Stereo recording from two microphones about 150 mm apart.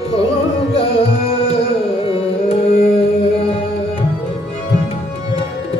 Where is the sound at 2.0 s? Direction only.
40° left (ahead or behind).